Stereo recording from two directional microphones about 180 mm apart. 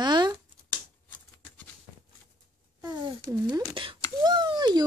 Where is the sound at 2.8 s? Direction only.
20° right (ahead or behind).